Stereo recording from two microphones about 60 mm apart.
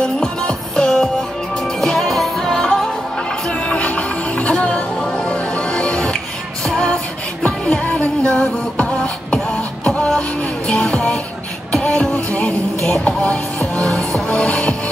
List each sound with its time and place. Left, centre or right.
0.0 s music: centre